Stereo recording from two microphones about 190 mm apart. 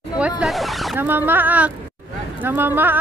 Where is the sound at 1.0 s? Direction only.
10° right (ahead or behind).